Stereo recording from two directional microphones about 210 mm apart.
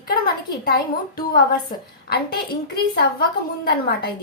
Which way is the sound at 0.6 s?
45° left (ahead or behind).